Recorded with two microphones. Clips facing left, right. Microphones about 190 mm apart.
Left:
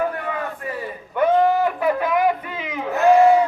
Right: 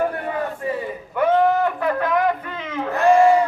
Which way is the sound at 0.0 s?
40° right (ahead or behind).